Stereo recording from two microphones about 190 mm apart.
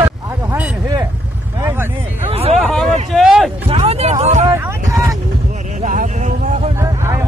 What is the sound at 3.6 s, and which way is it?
Music, 30° right (ahead or behind).